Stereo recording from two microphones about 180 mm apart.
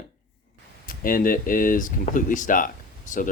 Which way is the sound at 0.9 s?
50° left (ahead or behind).